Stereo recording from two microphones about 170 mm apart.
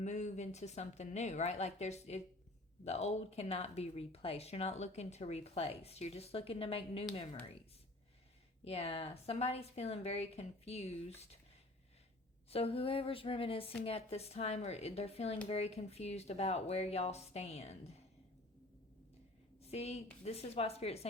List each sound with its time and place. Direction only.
0.0 s speech: 45° left (ahead or behind)
8.6 s speech: 35° left (ahead or behind)
12.5 s speech: 35° left (ahead or behind)
19.6 s a woman's voice: 35° left (ahead or behind)